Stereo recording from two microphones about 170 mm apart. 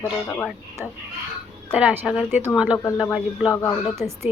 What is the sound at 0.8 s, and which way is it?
Speech, 10° right (ahead or behind).